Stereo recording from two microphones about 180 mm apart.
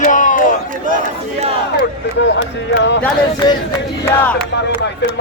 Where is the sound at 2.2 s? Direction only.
80° left.